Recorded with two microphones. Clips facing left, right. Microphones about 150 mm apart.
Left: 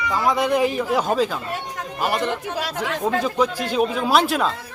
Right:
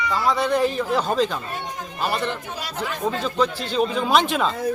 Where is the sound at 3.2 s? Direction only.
10° left (ahead or behind).